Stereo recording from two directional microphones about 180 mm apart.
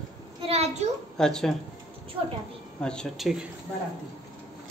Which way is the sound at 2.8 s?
5° left (ahead or behind).